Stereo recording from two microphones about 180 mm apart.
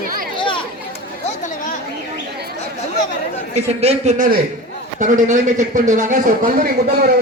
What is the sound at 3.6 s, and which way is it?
A man's voice, 35° right (ahead or behind).